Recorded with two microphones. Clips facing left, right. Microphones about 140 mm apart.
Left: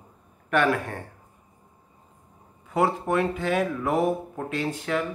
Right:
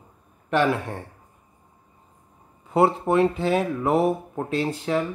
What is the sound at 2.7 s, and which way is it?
Speech, 35° right (ahead or behind).